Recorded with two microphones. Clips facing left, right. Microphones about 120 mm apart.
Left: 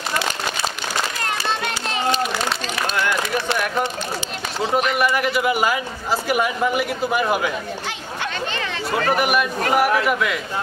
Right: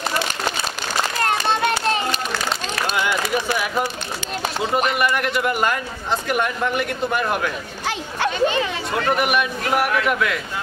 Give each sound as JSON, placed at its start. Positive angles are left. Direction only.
{"t": 4.9, "sound": "speech", "side_deg": 0}
{"t": 9.1, "sound": "speech", "side_deg": 0}